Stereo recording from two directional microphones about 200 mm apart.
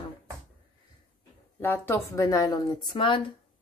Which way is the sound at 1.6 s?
10° left (ahead or behind).